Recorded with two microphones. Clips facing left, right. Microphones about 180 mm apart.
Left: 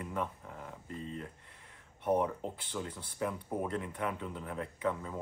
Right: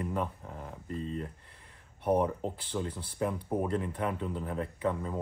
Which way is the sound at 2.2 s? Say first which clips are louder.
Right 3 dB; 30° right (ahead or behind).